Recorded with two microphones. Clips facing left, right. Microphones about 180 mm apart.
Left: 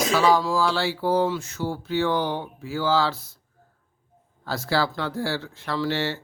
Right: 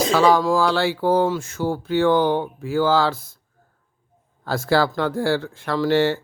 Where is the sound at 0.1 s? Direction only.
55° right (ahead or behind).